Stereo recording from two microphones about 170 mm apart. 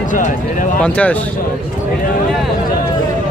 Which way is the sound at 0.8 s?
10° left (ahead or behind).